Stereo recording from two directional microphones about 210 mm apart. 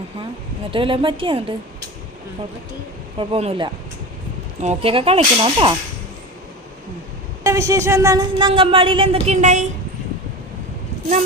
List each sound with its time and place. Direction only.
0.7 s speech: 25° right (ahead or behind)
3.2 s speech: 25° right (ahead or behind)
7.4 s speech: 15° right (ahead or behind); by 9.6 s 35° right (ahead or behind)